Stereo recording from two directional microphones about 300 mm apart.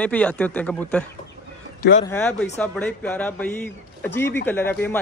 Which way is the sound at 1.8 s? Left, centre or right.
Left.